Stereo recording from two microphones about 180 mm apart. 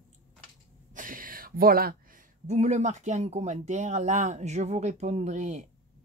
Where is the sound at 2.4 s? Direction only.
40° right (ahead or behind).